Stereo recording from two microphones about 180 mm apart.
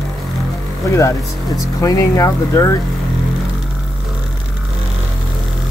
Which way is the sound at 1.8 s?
20° left (ahead or behind).